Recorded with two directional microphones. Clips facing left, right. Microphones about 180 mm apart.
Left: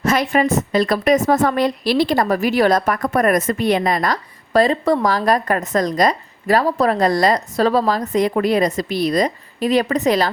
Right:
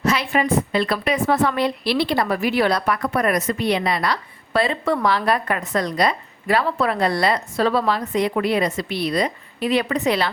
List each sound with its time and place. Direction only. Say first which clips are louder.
0.0 s a woman's voice: left 4 dB; 45° left (ahead or behind)